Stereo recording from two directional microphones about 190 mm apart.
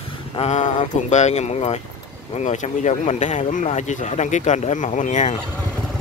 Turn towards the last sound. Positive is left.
turn(degrees=40)  # may be behind; listen again after turning